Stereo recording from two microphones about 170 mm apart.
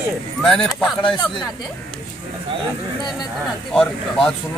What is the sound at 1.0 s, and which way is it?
Speech, 30° left (ahead or behind).